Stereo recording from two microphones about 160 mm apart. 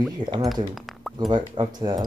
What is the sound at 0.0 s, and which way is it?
Speech, 25° right (ahead or behind).